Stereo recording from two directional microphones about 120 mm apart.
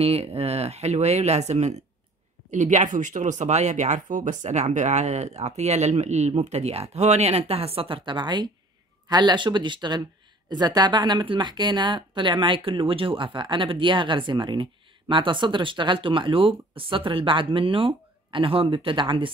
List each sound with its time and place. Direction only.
0.0 s speech: 55° right (ahead or behind)
2.5 s speech: 85° right; by 19.3 s 45° right (ahead or behind)